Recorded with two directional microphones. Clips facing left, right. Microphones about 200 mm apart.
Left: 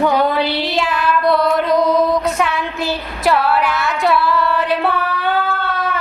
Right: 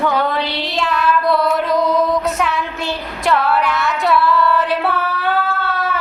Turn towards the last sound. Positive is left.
turn(degrees=-5)  # may be behind; listen again after turning